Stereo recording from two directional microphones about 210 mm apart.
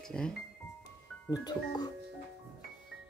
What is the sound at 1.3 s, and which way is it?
Speech, 20° left (ahead or behind).